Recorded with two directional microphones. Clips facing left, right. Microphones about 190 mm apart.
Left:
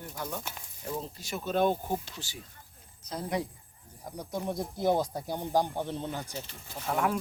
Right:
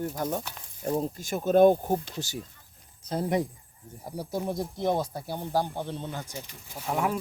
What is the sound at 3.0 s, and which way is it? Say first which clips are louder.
Speech: right 6 dB; 30° right (ahead or behind).